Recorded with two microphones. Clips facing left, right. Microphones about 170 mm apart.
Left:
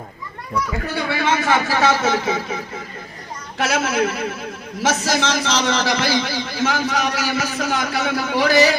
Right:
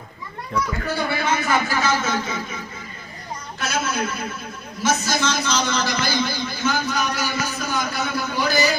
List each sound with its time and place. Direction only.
1.1 s a man's voice: 90° left
3.6 s a man's voice: 90° left